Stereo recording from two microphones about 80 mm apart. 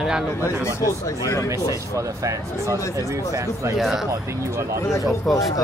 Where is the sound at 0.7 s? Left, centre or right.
Left.